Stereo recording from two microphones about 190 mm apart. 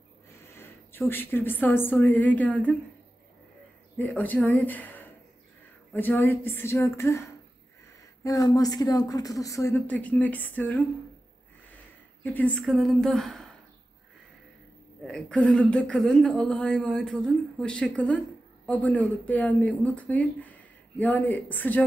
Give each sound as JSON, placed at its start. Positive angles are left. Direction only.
{"t": 0.6, "sound": "a woman's voice", "side_deg": 10}
{"t": 4.0, "sound": "a woman's voice", "side_deg": 10}
{"t": 12.2, "sound": "speech", "side_deg": 10}
{"t": 15.0, "sound": "a woman's voice", "side_deg": 5}